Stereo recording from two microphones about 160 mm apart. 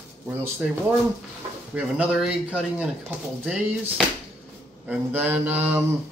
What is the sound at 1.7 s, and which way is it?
Speech, 5° right (ahead or behind).